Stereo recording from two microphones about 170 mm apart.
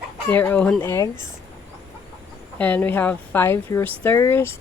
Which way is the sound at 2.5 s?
10° left (ahead or behind).